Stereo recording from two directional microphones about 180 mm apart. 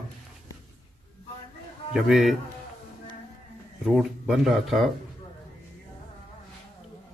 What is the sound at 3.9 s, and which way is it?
A man's voice, 5° right (ahead or behind).